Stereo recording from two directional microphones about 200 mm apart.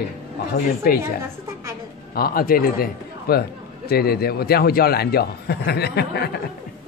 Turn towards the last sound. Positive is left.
turn(degrees=55)  # may be behind; listen again after turning